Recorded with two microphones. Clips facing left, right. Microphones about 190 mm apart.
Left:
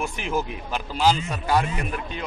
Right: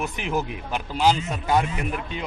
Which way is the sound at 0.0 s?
20° right (ahead or behind).